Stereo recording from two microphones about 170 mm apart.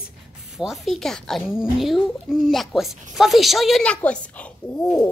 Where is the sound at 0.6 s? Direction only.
Centre (ahead or behind).